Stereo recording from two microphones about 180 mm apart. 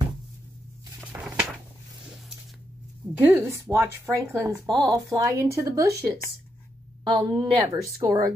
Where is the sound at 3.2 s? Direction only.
10° right (ahead or behind).